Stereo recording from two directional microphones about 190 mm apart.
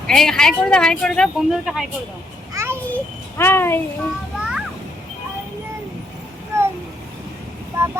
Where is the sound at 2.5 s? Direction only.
15° right (ahead or behind).